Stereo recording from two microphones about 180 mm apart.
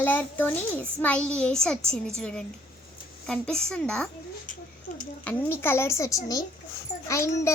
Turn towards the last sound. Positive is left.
turn(degrees=15)  # may be behind; listen again after turning